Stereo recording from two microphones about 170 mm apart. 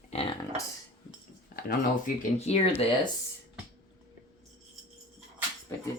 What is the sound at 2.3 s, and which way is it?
Speech, 40° left (ahead or behind).